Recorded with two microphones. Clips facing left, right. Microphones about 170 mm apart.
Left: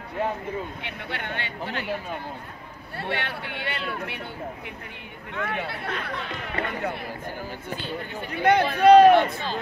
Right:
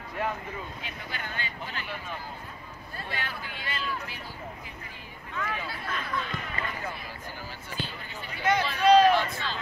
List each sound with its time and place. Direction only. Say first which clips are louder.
0.8 s speech: left 5 dB; 65° left (ahead or behind)
3.0 s speech: left 7 dB; 70° left (ahead or behind)
5.3 s speech: left 4 dB; 65° left (ahead or behind)